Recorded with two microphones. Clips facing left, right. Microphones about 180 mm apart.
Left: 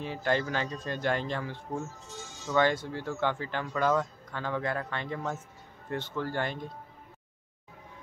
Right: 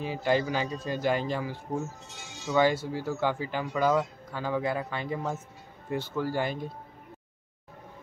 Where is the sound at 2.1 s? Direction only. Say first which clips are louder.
Right 2 dB; 70° right (ahead or behind).